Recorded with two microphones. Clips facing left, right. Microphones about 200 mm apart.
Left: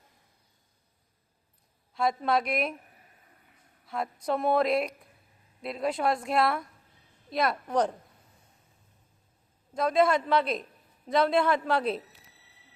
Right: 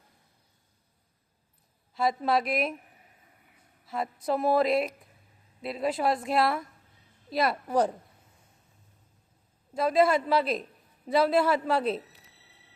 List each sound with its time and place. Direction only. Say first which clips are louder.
1.9 s speech: right 1 dB; centre (ahead or behind)
3.8 s speech: right 1 dB; centre (ahead or behind)
9.7 s speech: right 1 dB; 5° right (ahead or behind)